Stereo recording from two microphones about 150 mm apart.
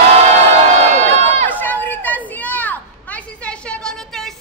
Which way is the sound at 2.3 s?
10° left (ahead or behind).